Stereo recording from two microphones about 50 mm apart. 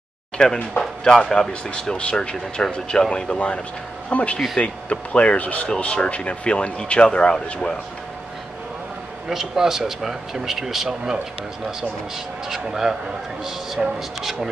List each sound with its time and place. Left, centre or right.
0.4 s speech: centre
9.3 s speech: centre
12.4 s speech: centre
13.9 s speech: centre